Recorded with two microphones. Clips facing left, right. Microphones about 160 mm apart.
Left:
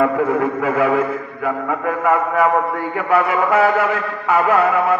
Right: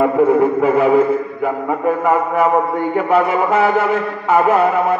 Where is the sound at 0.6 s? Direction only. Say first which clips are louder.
Right 4 dB; 25° right (ahead or behind).